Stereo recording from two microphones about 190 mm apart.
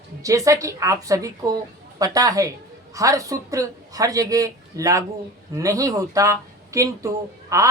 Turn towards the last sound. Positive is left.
turn(degrees=-15)  # may be behind; listen again after turning